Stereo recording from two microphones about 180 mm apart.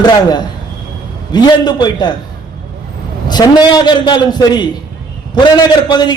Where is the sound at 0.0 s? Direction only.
25° left (ahead or behind).